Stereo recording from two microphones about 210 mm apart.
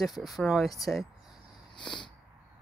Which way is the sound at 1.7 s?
20° left (ahead or behind).